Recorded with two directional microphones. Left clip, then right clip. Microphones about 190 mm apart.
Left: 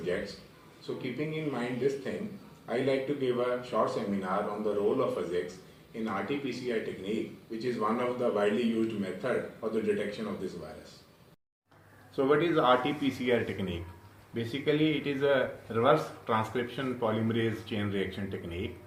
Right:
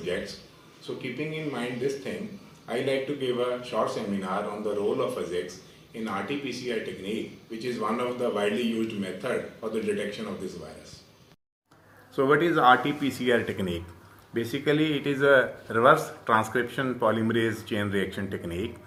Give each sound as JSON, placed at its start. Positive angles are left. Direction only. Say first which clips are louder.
{"t": 1.3, "sound": "speech", "louder": "right 2 dB", "side_deg": 0}
{"t": 12.1, "sound": "speech", "louder": "right 4 dB", "side_deg": -45}